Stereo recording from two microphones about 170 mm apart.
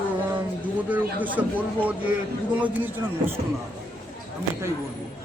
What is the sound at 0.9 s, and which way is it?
Speech, 10° right (ahead or behind).